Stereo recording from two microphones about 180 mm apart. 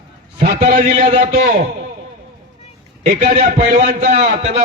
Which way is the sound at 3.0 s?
45° right (ahead or behind).